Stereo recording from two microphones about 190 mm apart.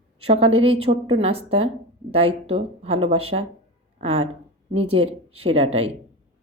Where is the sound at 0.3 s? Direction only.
30° right (ahead or behind).